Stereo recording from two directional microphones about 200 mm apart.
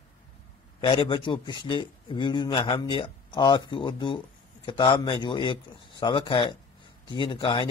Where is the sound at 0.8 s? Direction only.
25° left (ahead or behind).